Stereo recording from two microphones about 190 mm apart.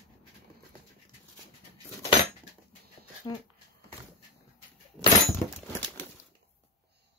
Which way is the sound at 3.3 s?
25° left (ahead or behind).